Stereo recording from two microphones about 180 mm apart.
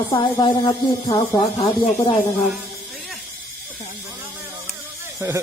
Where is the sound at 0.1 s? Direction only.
25° left (ahead or behind).